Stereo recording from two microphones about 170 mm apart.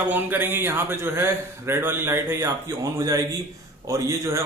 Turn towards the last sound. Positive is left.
turn(degrees=-20)  # may be behind; listen again after turning